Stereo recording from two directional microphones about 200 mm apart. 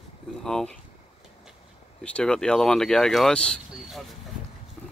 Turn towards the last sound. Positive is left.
turn(degrees=0)  # may be behind; listen again after turning